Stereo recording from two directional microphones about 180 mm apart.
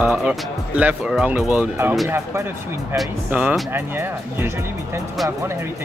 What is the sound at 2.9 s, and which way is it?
Speech, 5° right (ahead or behind).